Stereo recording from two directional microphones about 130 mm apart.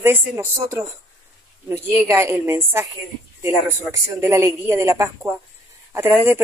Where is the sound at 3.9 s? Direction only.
25° right (ahead or behind).